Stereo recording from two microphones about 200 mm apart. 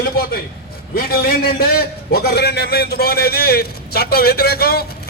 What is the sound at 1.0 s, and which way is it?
A man's voice, 50° left (ahead or behind).